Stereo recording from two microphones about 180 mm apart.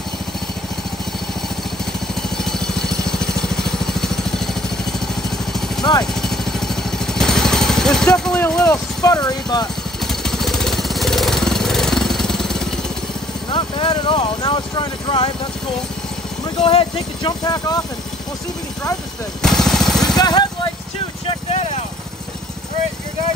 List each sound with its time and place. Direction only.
2.2 s vehicle: centre (ahead or behind)
5.8 s vehicle: 20° left (ahead or behind)
6.2 s vehicle: centre (ahead or behind)
8.6 s speech: 20° left (ahead or behind)
10.0 s jackhammer: centre (ahead or behind)
13.5 s speech: 25° left (ahead or behind)
16.6 s speech: 30° left (ahead or behind)
19.4 s vehicle: centre (ahead or behind)
20.2 s speech: 25° left (ahead or behind)
21.5 s vehicle: 40° left (ahead or behind)